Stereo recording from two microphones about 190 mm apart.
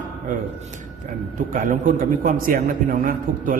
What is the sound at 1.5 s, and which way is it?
A man's voice, 45° right (ahead or behind).